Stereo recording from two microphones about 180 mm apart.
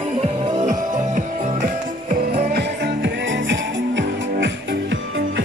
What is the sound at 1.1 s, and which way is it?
Music, 45° right (ahead or behind).